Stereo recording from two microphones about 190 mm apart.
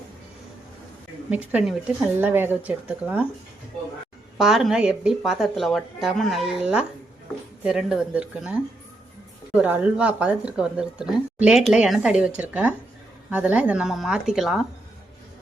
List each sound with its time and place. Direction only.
1.3 s speech: 5° right (ahead or behind)
4.4 s speech: centre (ahead or behind)